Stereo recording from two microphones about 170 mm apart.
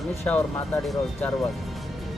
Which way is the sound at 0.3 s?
10° left (ahead or behind).